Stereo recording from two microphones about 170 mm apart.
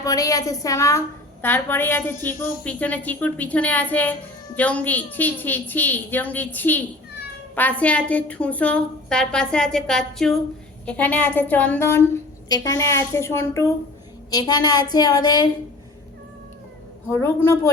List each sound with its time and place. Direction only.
0.0 s a woman's voice: 20° left (ahead or behind)
17.1 s a woman's voice: 15° left (ahead or behind)